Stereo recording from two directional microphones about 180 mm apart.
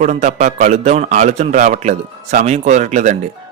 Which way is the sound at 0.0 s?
40° right (ahead or behind).